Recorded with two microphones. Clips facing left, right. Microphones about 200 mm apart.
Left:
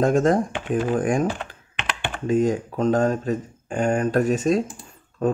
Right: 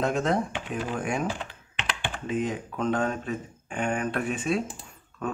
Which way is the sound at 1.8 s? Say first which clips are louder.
Left 3 dB; 60° left (ahead or behind).